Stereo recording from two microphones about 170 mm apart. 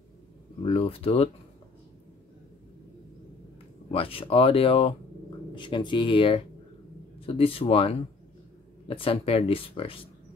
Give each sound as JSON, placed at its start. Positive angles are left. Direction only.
{"t": 0.6, "sound": "speech", "side_deg": 35}
{"t": 3.9, "sound": "speech", "side_deg": 35}